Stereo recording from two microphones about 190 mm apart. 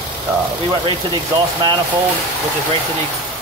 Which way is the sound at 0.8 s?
25° right (ahead or behind).